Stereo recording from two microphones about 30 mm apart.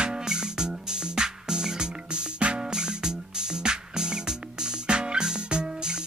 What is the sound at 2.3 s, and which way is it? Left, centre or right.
Music, right.